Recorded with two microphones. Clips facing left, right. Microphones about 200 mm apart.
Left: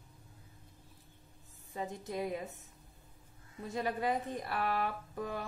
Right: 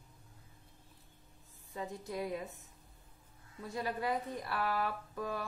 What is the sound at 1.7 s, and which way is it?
Speech, 20° left (ahead or behind).